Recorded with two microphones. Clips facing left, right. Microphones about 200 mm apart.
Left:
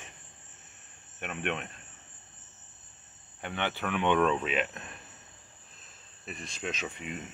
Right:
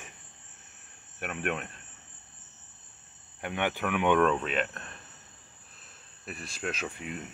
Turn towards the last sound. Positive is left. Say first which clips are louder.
# right 1 dB
turn(degrees=0)  # may be behind; listen again after turning